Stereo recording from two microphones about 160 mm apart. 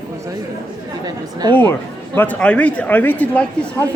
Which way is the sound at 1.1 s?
25° right (ahead or behind).